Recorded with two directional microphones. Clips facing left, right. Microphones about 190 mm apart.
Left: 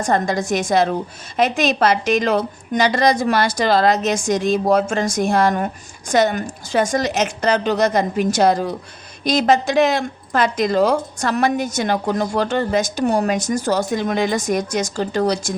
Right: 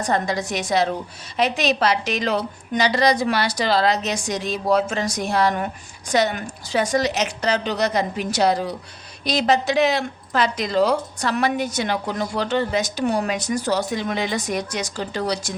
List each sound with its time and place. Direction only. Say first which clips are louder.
0.0 s speech: left 3 dB; 50° left (ahead or behind)